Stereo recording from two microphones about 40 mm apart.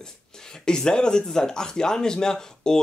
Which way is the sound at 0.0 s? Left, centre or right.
Centre.